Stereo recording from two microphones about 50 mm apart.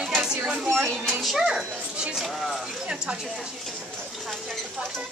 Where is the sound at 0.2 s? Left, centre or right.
Centre.